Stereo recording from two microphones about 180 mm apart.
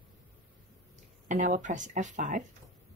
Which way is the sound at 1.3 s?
45° right (ahead or behind).